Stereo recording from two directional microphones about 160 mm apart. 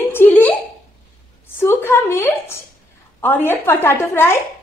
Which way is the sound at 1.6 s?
15° left (ahead or behind).